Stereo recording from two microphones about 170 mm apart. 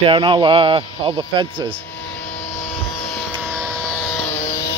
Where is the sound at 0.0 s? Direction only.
30° right (ahead or behind).